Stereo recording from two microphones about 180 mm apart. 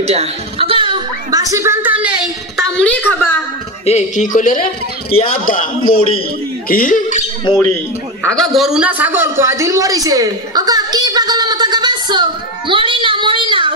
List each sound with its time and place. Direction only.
0.0 s music: 35° right (ahead or behind); by 2.6 s 5° right (ahead or behind)
3.1 s a woman's voice: 10° left (ahead or behind)
3.8 s speech: 35° left (ahead or behind)
4.3 s a man's voice: 45° left (ahead or behind)
7.5 s a man's voice: 25° left (ahead or behind)
8.3 s a sound: centre (ahead or behind); by 13.7 s 25° right (ahead or behind)